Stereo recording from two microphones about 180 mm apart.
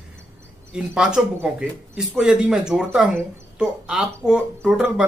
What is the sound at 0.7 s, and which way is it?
Speech, 5° right (ahead or behind).